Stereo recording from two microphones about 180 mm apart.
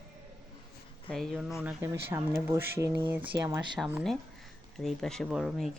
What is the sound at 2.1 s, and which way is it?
Speech, 15° right (ahead or behind).